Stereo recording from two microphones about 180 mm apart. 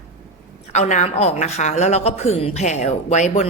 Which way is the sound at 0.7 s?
40° left (ahead or behind).